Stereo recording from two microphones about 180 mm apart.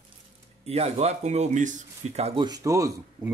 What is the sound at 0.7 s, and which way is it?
Speech, 35° right (ahead or behind).